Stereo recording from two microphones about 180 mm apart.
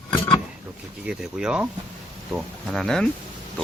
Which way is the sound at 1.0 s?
5° right (ahead or behind).